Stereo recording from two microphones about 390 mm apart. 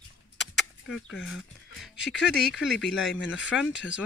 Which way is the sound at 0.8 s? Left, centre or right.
Left.